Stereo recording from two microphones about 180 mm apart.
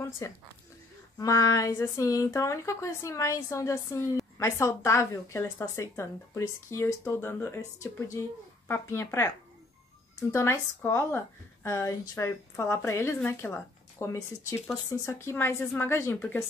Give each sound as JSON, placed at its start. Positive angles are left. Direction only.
{"t": 0.2, "sound": "speech", "side_deg": 15}
{"t": 10.3, "sound": "speech", "side_deg": 15}